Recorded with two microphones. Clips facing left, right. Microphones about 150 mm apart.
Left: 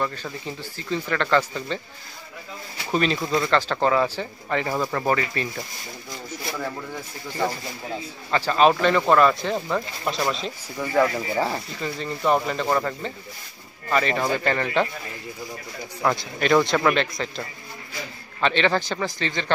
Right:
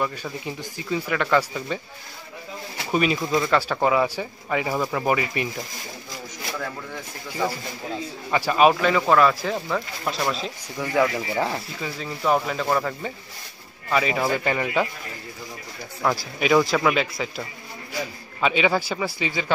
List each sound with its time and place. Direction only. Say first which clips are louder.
0.0 s speech: right 1 dB; 10° right (ahead or behind)
2.9 s speech: right 1 dB; 10° right (ahead or behind)
8.3 s speech: even; 10° right (ahead or behind)
16.0 s speech: even; 5° right (ahead or behind)